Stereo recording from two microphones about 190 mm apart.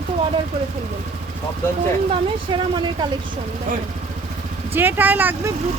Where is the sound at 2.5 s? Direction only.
25° right (ahead or behind).